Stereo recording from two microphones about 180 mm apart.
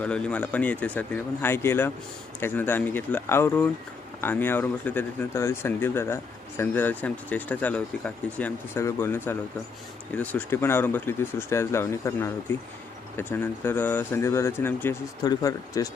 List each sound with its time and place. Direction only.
0.0 s speech: 5° left (ahead or behind)